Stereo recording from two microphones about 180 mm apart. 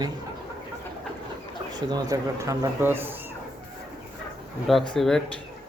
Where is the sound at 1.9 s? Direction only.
20° right (ahead or behind).